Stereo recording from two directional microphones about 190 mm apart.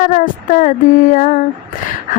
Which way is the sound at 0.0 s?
45° left (ahead or behind).